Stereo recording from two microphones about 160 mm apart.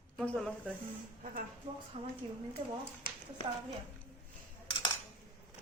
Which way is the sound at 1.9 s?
45° right (ahead or behind).